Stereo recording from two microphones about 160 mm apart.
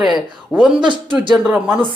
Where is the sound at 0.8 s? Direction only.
30° right (ahead or behind).